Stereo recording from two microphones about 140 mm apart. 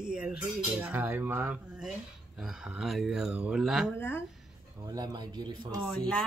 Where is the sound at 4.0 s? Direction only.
15° left (ahead or behind).